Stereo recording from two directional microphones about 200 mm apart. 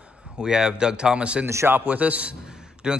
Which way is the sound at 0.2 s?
5° right (ahead or behind).